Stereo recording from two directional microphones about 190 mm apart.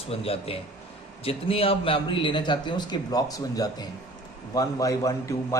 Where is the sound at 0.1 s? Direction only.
30° left (ahead or behind).